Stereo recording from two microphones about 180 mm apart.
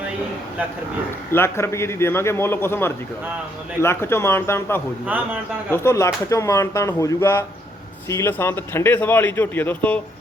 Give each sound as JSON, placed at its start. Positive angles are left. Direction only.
{"t": 1.3, "sound": "a man's voice", "side_deg": 15}
{"t": 5.0, "sound": "speech", "side_deg": -10}
{"t": 5.7, "sound": "a man's voice", "side_deg": 15}